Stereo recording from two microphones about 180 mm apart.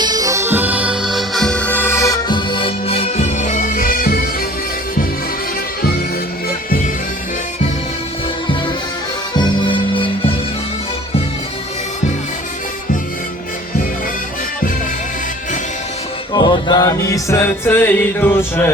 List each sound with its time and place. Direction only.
0.0 s music: 20° right (ahead or behind); by 4.2 s 55° left (ahead or behind)
9.3 s music: 25° left (ahead or behind)
16.3 s music: 25° left (ahead or behind)